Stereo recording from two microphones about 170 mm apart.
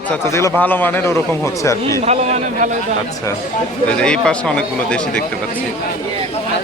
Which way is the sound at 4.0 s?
5° left (ahead or behind).